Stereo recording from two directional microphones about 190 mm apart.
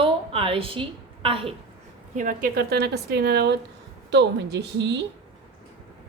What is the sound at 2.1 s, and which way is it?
A woman's voice, 45° right (ahead or behind).